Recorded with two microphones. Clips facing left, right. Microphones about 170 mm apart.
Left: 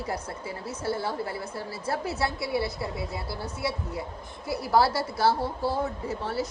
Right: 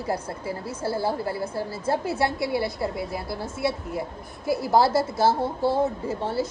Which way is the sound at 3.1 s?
25° right (ahead or behind).